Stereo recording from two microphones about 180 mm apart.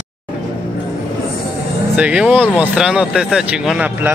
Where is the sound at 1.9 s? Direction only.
5° right (ahead or behind).